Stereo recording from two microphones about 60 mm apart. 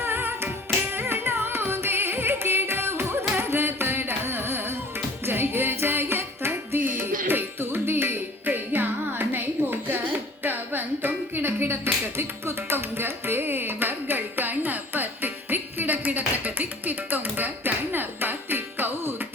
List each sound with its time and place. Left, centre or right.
0.0 s music: right
0.9 s carnatic music: right
5.2 s music: right